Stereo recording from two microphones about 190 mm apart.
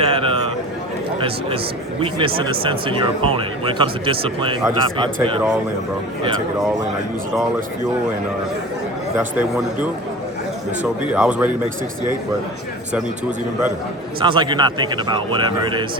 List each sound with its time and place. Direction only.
0.0 s a sound: 30° right (ahead or behind)
2.0 s speech: 25° right (ahead or behind)
9.1 s a man's voice: 10° right (ahead or behind)
11.1 s a man's voice: 5° right (ahead or behind)
14.2 s speech: 25° right (ahead or behind)